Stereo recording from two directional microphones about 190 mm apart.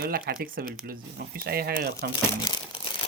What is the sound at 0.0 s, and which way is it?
Speech, 55° right (ahead or behind).